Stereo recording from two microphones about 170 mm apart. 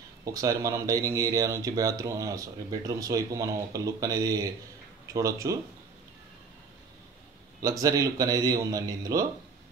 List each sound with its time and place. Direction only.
0.2 s speech: 20° right (ahead or behind)
7.6 s speech: 20° right (ahead or behind)